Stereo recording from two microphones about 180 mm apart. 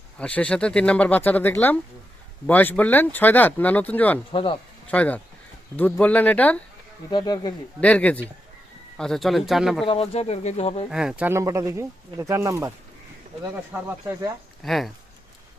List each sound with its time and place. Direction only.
0.2 s speech: 5° left (ahead or behind)
4.3 s speech: 30° left (ahead or behind)
4.9 s speech: 5° left (ahead or behind)
7.1 s speech: 25° left (ahead or behind)
7.8 s speech: 5° left (ahead or behind)
9.8 s speech: 30° left (ahead or behind)
10.9 s speech: 5° right (ahead or behind)
13.8 s speech: 15° right (ahead or behind)
14.6 s speech: centre (ahead or behind)